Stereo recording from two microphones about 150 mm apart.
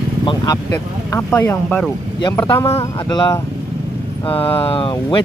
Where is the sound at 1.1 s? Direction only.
15° left (ahead or behind).